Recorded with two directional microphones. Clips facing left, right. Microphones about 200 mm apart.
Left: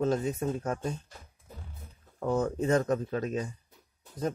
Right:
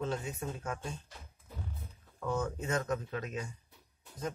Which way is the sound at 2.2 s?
35° left (ahead or behind).